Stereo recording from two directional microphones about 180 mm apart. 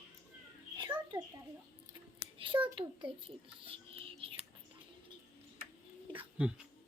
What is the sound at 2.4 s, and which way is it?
A child's voice, 30° right (ahead or behind).